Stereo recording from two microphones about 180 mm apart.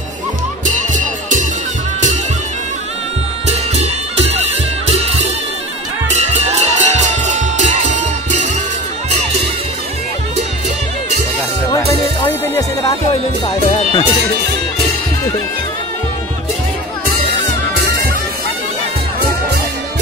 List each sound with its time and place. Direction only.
3.4 s bagpipes: 35° right (ahead or behind)
4.8 s music: 35° right (ahead or behind)
12.5 s music: 20° left (ahead or behind)